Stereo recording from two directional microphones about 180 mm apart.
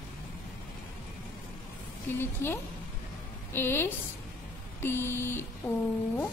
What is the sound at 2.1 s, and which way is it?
Mantra, 10° left (ahead or behind).